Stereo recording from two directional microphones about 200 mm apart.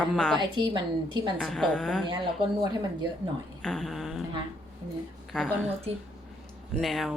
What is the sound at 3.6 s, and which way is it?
Music, centre (ahead or behind).